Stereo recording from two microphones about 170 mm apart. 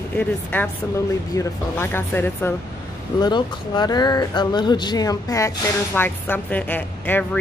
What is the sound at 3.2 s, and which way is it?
Speech, 25° left (ahead or behind).